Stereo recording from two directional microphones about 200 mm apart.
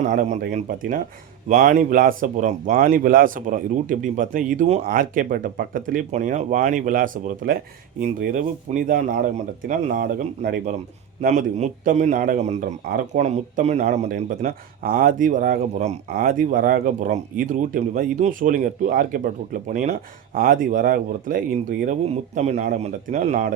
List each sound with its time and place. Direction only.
0.0 s a man's voice: 35° right (ahead or behind)